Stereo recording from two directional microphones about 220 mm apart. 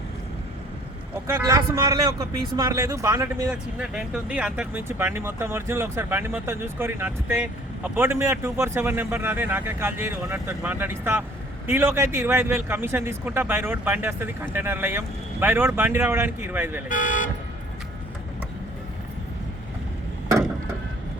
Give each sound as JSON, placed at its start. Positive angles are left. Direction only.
{"t": 1.1, "sound": "speech", "side_deg": -15}
{"t": 3.5, "sound": "speech", "side_deg": -5}
{"t": 16.9, "sound": "speech", "side_deg": 35}